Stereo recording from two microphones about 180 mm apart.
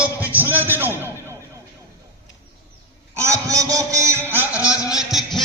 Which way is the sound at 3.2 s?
20° right (ahead or behind).